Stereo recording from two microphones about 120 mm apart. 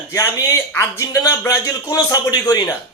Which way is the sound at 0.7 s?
30° left (ahead or behind).